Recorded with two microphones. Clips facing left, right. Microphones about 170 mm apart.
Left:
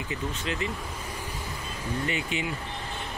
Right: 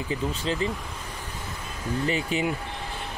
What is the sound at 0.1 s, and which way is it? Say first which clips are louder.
Speech: right 5 dB; 30° right (ahead or behind).